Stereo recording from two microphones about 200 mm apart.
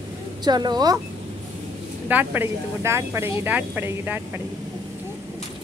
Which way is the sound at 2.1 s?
10° right (ahead or behind).